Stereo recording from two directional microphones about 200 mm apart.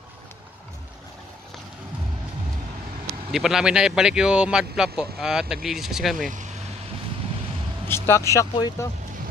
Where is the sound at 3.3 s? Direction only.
Centre (ahead or behind).